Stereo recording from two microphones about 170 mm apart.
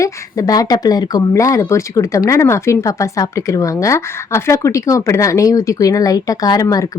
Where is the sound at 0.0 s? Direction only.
20° left (ahead or behind).